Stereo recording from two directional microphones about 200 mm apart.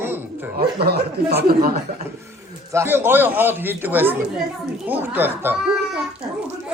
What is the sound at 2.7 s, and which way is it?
A man's voice, 10° right (ahead or behind).